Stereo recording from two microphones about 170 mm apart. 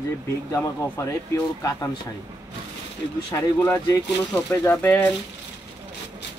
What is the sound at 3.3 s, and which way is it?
Speech, 15° left (ahead or behind).